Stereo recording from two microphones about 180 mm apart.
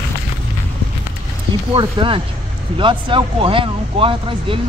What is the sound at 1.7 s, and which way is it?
Speech, 30° right (ahead or behind).